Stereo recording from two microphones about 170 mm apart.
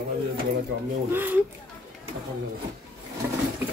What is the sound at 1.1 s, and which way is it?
Speech, 10° right (ahead or behind).